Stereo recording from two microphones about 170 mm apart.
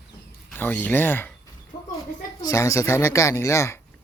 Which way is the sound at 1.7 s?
30° left (ahead or behind).